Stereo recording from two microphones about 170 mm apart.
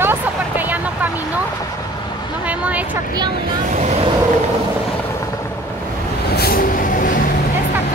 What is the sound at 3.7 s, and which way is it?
Vehicle, 40° right (ahead or behind).